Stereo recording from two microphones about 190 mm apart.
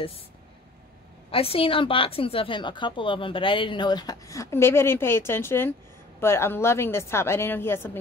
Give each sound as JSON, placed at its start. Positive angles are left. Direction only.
{"t": 1.3, "sound": "a woman's voice", "side_deg": 30}